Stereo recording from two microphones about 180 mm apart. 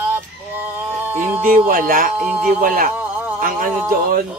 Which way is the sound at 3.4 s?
50° right (ahead or behind).